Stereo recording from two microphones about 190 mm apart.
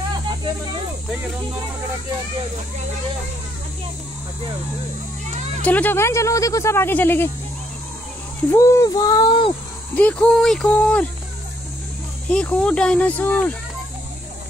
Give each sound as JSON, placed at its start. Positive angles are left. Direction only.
{"t": 5.6, "sound": "speech", "side_deg": 10}
{"t": 8.5, "sound": "speech", "side_deg": 15}
{"t": 9.9, "sound": "speech", "side_deg": 5}
{"t": 12.3, "sound": "speech", "side_deg": 5}